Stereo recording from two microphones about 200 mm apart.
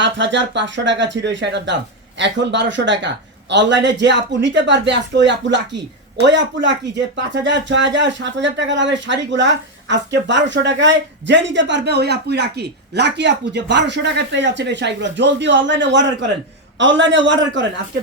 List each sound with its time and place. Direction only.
0.0 s speech: 65° right (ahead or behind)